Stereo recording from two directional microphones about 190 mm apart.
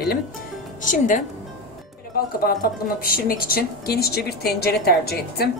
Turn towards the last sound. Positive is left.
turn(degrees=55)  # may be behind; listen again after turning